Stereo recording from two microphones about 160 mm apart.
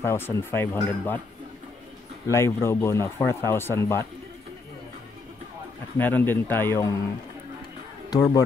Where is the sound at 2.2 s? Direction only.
15° left (ahead or behind).